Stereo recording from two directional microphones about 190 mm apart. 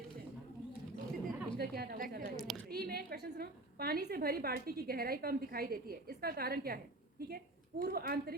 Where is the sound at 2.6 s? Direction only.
55° right (ahead or behind).